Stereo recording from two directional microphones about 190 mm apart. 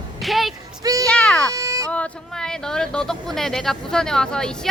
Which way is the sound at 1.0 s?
5° left (ahead or behind).